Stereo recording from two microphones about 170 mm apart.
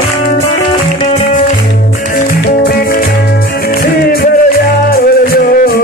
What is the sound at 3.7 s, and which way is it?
Music, 60° left (ahead or behind).